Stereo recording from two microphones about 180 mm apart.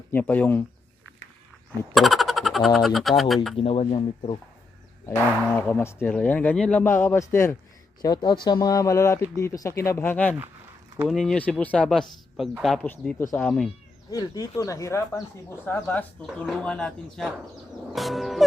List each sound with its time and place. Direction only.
0.1 s speech: 10° left (ahead or behind)
1.9 s speech: centre (ahead or behind)
3.6 s speech: 30° left (ahead or behind)
5.0 s speech: 10° left (ahead or behind)
14.1 s speech: 20° left (ahead or behind); by 17.3 s 5° left (ahead or behind)
17.9 s music: centre (ahead or behind)